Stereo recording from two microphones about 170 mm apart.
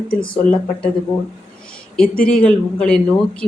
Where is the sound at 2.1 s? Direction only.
60° left (ahead or behind).